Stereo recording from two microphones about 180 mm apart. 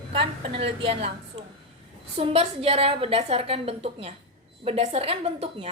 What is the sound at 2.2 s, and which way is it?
A woman's voice, 35° right (ahead or behind).